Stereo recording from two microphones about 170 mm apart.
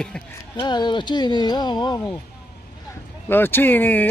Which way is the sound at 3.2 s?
10° left (ahead or behind).